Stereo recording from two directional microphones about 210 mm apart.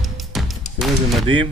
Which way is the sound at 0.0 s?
Centre (ahead or behind).